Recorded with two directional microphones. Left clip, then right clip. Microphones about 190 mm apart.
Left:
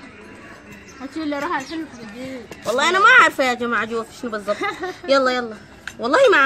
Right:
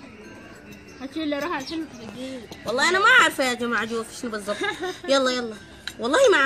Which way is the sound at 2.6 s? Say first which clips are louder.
Left 4 dB; centre (ahead or behind).